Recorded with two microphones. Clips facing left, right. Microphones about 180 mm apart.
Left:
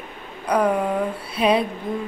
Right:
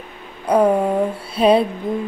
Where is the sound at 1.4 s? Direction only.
30° right (ahead or behind).